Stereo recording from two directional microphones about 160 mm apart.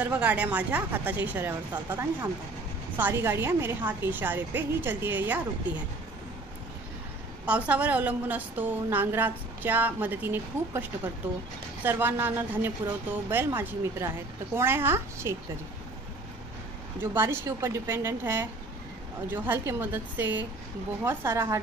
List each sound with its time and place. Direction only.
0.0 s a woman's voice: 10° right (ahead or behind)
7.4 s a woman's voice: 10° right (ahead or behind)
17.0 s a woman's voice: 15° right (ahead or behind)